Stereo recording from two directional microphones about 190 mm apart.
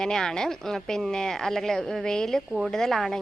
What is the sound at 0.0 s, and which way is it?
A woman's voice, 5° left (ahead or behind).